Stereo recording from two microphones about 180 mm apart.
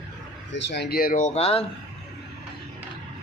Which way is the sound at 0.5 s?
75° left (ahead or behind).